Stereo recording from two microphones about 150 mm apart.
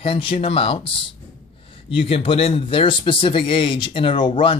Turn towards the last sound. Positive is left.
turn(degrees=35)  # may be behind; listen again after turning